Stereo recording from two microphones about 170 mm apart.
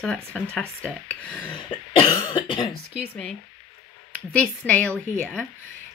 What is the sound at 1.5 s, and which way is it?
Cough, 30° left (ahead or behind).